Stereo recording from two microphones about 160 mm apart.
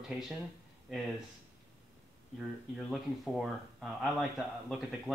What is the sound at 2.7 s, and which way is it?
Speech, centre (ahead or behind).